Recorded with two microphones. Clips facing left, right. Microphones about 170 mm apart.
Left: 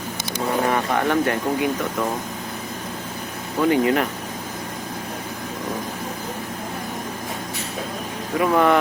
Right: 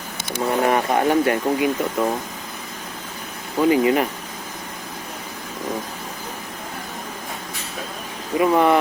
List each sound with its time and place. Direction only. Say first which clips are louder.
0.3 s speech: right 2 dB; 20° right (ahead or behind)
3.7 s speech: right 2 dB; 10° right (ahead or behind)
8.4 s speech: right 1 dB; 5° right (ahead or behind)